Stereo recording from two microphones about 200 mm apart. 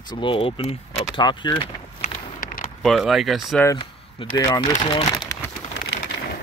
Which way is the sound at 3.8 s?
20° left (ahead or behind).